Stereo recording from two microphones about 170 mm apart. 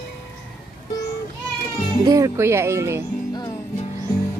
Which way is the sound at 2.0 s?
20° right (ahead or behind).